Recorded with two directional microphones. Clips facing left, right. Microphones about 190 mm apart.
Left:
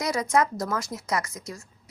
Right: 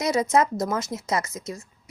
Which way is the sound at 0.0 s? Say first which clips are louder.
Right 3 dB; 25° right (ahead or behind).